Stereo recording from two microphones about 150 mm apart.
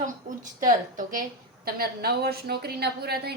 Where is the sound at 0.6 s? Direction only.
60° right (ahead or behind); by 3.3 s 90° right.